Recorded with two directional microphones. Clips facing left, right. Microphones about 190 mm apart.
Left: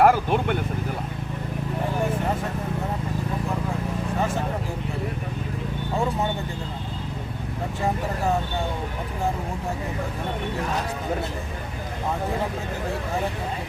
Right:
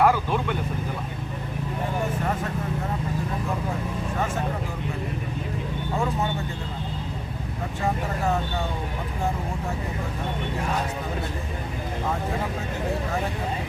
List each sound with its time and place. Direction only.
0.0 s vehicle: 55° left (ahead or behind)